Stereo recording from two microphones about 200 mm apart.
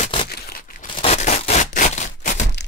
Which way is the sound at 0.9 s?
35° left (ahead or behind).